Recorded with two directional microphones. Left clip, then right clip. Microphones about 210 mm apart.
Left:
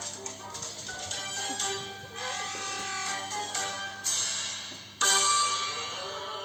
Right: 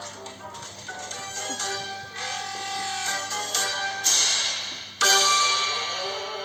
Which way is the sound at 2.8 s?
35° right (ahead or behind).